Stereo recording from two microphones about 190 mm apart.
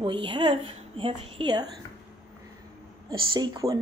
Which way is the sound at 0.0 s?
25° right (ahead or behind).